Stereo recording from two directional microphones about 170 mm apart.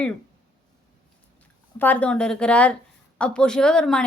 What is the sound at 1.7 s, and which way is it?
A woman's voice, 10° left (ahead or behind).